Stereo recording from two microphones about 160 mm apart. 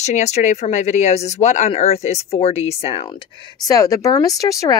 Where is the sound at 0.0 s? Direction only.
45° left (ahead or behind).